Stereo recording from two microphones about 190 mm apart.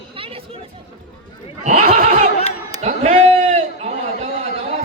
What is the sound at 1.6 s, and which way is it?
Neigh, 40° right (ahead or behind).